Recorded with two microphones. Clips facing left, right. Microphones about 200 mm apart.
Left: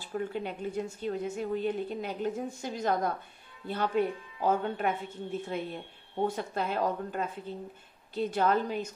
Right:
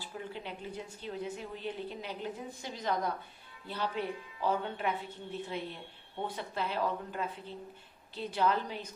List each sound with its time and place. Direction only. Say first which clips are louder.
0.0 s a woman's voice: left 8 dB; 50° left (ahead or behind)